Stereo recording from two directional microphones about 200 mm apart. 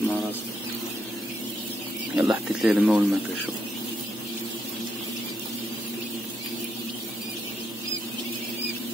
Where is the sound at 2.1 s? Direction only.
5° right (ahead or behind).